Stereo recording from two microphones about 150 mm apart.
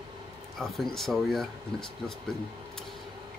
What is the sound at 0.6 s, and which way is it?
Speech, centre (ahead or behind).